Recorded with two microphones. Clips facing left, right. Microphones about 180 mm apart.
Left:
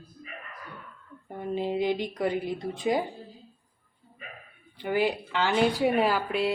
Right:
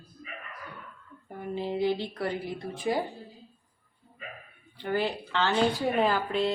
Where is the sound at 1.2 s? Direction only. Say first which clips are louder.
Left 3 dB; 20° left (ahead or behind).